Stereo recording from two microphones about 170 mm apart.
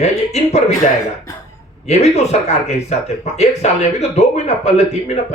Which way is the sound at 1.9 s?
40° left (ahead or behind).